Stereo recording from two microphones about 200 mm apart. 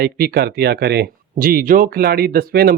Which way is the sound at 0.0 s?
50° right (ahead or behind).